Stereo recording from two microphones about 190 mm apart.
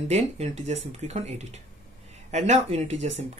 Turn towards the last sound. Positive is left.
turn(degrees=-35)  # may be behind; listen again after turning